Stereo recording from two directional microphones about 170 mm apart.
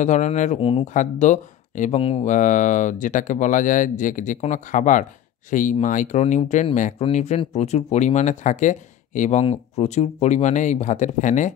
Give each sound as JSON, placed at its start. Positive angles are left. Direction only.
{"t": 0.0, "sound": "speech", "side_deg": 45}
{"t": 0.9, "sound": "speech", "side_deg": 45}